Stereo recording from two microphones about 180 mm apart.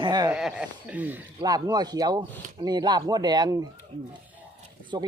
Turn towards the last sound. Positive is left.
turn(degrees=-25)  # may be behind; listen again after turning